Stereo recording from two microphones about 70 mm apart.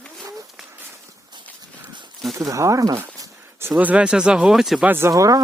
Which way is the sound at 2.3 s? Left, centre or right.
Right.